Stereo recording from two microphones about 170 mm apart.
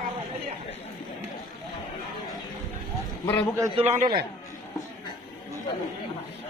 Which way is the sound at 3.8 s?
40° right (ahead or behind).